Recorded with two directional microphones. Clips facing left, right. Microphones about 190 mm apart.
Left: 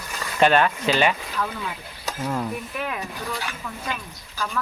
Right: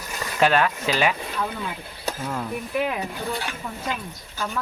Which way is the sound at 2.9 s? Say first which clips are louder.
Right 3 dB; 30° right (ahead or behind).